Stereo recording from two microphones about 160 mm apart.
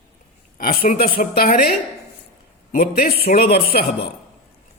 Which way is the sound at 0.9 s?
70° left (ahead or behind).